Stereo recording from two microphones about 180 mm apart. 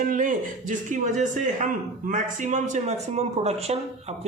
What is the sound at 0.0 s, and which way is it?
A man's voice, 45° right (ahead or behind).